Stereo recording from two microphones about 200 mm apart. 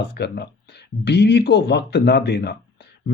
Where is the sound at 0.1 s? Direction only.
55° left (ahead or behind).